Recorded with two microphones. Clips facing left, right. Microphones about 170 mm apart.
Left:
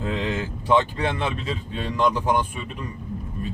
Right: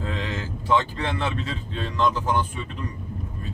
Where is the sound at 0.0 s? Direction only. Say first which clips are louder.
Left 4 dB; 20° left (ahead or behind).